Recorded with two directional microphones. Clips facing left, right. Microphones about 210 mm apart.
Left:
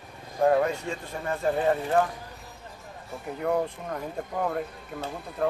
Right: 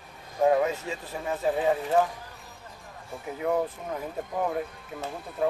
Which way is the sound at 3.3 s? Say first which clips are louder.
Even; centre (ahead or behind).